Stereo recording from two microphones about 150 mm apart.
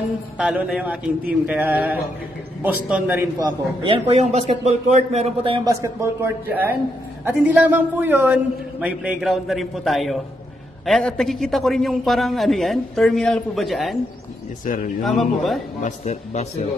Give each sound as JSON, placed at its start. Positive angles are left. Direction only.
{"t": 0.4, "sound": "a woman's voice", "side_deg": -5}
{"t": 3.3, "sound": "speech", "side_deg": -25}
{"t": 4.1, "sound": "a man's voice", "side_deg": -45}
{"t": 5.7, "sound": "a woman's voice", "side_deg": -20}
{"t": 14.6, "sound": "speech", "side_deg": 65}
{"t": 15.0, "sound": "a man's voice", "side_deg": 0}
{"t": 15.8, "sound": "speech", "side_deg": 45}